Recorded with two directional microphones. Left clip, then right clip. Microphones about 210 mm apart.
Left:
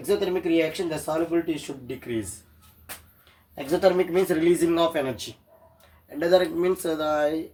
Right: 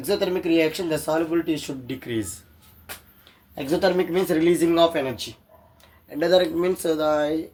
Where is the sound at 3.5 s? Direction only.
40° right (ahead or behind).